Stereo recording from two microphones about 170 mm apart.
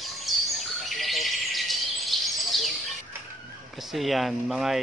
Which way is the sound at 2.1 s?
Centre (ahead or behind).